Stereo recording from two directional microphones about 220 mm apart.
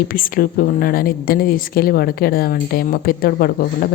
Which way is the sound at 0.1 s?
40° left (ahead or behind).